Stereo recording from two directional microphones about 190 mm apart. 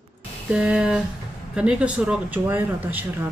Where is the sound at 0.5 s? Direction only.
5° right (ahead or behind).